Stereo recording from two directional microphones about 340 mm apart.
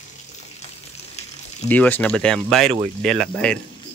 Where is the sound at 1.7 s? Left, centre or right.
Centre.